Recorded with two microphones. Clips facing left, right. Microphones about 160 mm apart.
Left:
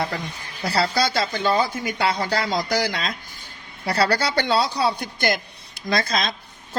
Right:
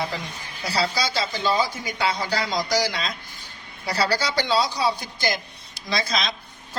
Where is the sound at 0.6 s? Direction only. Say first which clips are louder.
Left 3 dB; 55° left (ahead or behind).